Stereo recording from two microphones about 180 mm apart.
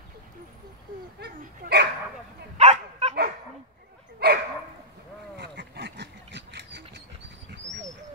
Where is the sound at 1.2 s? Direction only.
65° right (ahead or behind).